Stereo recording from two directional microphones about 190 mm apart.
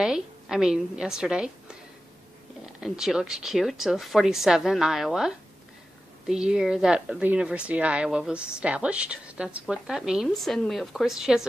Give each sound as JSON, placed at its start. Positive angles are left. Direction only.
{"t": 0.0, "sound": "a woman's voice", "side_deg": -5}
{"t": 2.8, "sound": "a woman's voice", "side_deg": 0}